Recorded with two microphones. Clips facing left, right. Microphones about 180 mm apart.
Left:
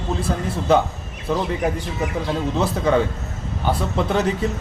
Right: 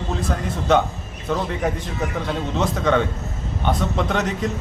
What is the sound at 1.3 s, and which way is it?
A man's voice, 5° left (ahead or behind).